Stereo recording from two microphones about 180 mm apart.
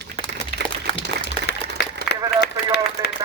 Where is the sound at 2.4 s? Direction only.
65° left (ahead or behind).